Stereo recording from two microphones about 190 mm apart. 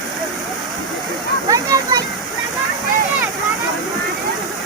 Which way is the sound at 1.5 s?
20° right (ahead or behind).